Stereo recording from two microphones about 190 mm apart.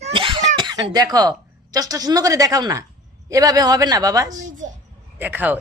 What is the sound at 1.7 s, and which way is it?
A woman's voice, 20° right (ahead or behind).